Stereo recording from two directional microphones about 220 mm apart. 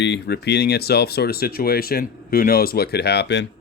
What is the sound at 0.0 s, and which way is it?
Speech, 50° left (ahead or behind).